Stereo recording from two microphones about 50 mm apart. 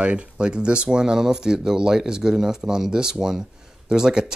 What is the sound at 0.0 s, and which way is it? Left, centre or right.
Speech, right.